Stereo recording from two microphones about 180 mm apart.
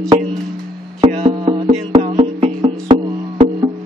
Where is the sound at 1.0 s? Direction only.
35° right (ahead or behind).